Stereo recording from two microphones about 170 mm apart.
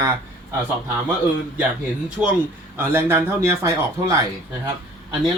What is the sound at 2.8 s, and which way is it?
A man's voice, 15° right (ahead or behind).